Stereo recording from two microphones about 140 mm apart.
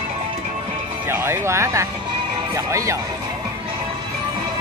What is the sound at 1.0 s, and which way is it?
Music, 15° right (ahead or behind).